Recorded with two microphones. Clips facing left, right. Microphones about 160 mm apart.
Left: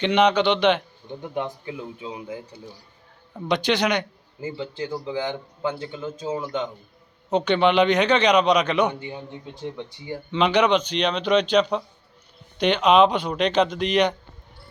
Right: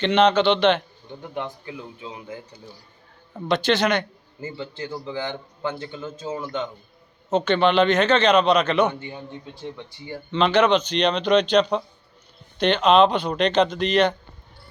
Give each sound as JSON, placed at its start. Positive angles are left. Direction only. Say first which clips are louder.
{"t": 0.0, "sound": "a man's voice", "louder": "right 1 dB", "side_deg": 10}
{"t": 3.5, "sound": "a man's voice", "louder": "right 1 dB", "side_deg": 15}